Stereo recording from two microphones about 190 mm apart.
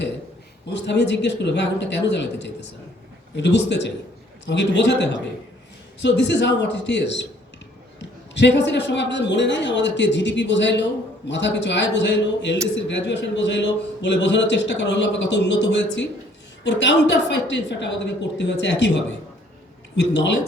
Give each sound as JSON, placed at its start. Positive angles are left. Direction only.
{"t": 0.7, "sound": "a man's voice", "side_deg": 65}